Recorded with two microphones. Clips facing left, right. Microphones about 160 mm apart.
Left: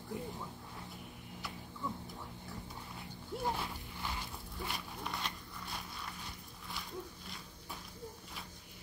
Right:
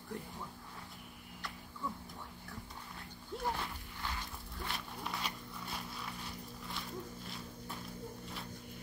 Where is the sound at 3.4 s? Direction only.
10° left (ahead or behind).